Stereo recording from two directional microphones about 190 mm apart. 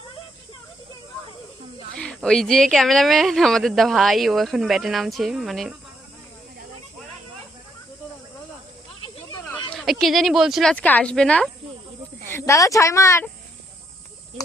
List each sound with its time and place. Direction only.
2.0 s speech: 5° left (ahead or behind)
9.7 s speech: centre (ahead or behind); by 13.2 s 15° left (ahead or behind)